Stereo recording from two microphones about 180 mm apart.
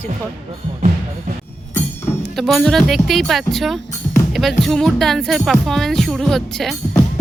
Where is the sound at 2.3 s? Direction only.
Centre (ahead or behind).